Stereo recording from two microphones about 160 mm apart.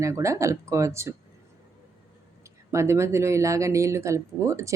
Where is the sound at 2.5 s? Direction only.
15° right (ahead or behind).